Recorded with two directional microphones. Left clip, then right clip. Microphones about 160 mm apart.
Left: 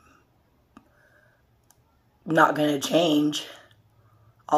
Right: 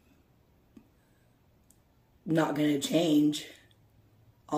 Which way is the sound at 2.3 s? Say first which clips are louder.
Left 8 dB; 25° right (ahead or behind).